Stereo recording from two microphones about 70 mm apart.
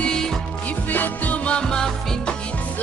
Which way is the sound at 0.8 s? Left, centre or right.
Left.